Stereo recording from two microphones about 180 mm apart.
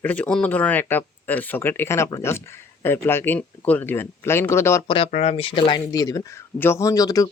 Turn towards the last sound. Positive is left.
turn(degrees=20)  # may be behind; listen again after turning